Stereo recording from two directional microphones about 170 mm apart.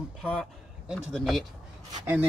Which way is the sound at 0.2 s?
Centre (ahead or behind).